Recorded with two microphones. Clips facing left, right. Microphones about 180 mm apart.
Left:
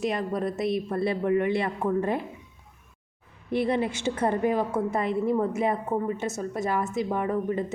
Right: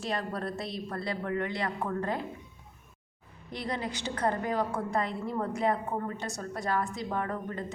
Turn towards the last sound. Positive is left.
turn(degrees=15)  # may be behind; listen again after turning